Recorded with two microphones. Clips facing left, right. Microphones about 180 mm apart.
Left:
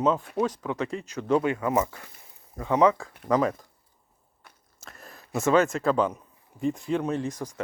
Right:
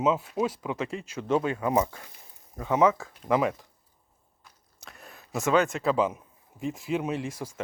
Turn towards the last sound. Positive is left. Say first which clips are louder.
# left 2 dB
turn(degrees=-10)  # may be behind; listen again after turning